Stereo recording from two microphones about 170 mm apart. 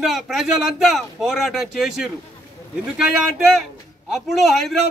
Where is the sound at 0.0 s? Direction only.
Centre (ahead or behind).